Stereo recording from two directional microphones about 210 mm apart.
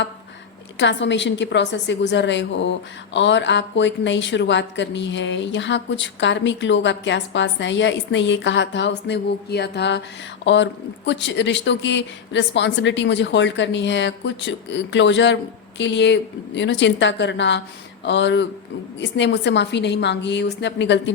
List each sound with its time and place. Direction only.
0.8 s a woman's voice: 60° left (ahead or behind)